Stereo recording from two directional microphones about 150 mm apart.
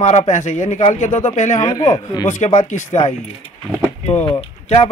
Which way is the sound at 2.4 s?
50° left (ahead or behind).